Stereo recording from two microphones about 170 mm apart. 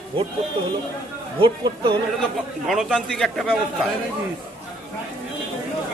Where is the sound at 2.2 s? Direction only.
Centre (ahead or behind).